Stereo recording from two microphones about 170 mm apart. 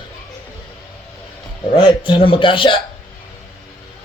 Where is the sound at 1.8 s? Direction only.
30° left (ahead or behind).